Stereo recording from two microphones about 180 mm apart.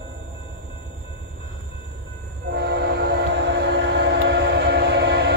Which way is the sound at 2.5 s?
65° right (ahead or behind).